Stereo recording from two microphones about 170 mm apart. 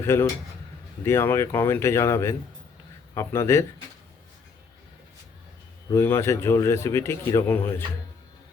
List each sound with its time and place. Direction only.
0.0 s speech: 15° left (ahead or behind)
5.9 s speech: 15° left (ahead or behind)